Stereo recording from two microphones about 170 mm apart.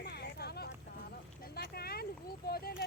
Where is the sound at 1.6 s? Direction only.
65° left (ahead or behind).